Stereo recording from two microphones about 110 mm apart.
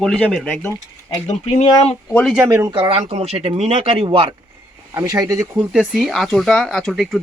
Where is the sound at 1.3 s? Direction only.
80° left.